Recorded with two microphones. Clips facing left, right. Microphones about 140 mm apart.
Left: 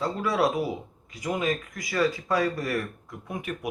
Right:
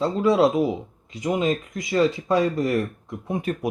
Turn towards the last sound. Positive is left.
turn(degrees=-30)  # may be behind; listen again after turning